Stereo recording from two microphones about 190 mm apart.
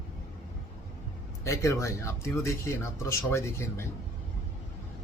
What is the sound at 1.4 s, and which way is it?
Speech, 15° left (ahead or behind).